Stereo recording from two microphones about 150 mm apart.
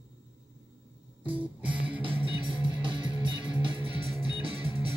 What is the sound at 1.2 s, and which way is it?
Music, 10° right (ahead or behind).